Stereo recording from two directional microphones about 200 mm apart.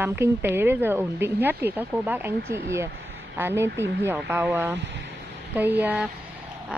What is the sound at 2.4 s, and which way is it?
Speech, 55° right (ahead or behind).